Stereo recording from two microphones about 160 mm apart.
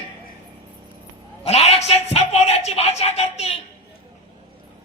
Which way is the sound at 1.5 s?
45° left (ahead or behind).